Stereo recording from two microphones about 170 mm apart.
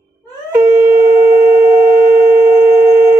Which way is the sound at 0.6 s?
15° right (ahead or behind).